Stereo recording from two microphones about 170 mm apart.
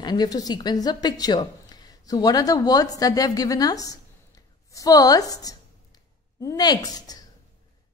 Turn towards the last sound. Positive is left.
turn(degrees=20)  # may be behind; listen again after turning